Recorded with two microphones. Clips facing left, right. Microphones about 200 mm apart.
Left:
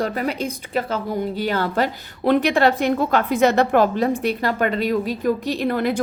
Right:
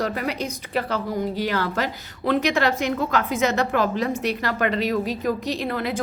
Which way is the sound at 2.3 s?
55° left (ahead or behind).